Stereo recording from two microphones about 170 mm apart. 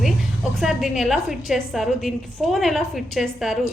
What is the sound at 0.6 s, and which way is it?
A woman's voice, centre (ahead or behind).